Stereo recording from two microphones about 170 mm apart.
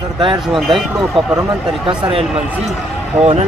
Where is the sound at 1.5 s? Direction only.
25° right (ahead or behind).